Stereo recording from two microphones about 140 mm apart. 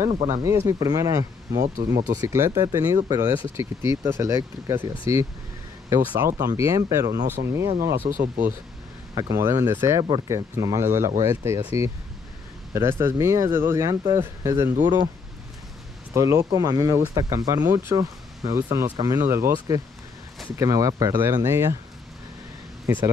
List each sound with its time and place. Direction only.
0.4 s speech: 20° right (ahead or behind)
8.1 s speech: 70° right (ahead or behind)
9.1 s speech: 20° right (ahead or behind)
16.1 s speech: 20° right (ahead or behind)